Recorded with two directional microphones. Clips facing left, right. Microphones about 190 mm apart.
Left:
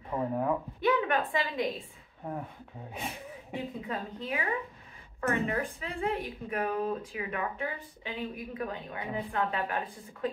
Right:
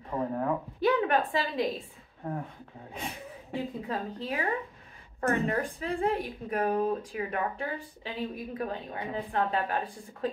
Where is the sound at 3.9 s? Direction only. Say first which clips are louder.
Right 2 dB; 35° right (ahead or behind).